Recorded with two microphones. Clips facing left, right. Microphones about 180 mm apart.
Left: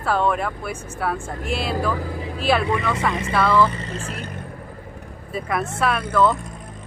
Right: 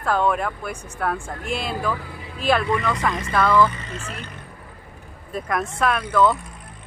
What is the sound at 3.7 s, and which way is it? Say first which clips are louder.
Speech: left 4 dB; 35° left (ahead or behind).